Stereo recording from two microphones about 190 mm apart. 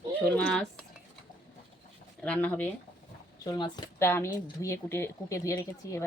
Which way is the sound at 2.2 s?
5° left (ahead or behind).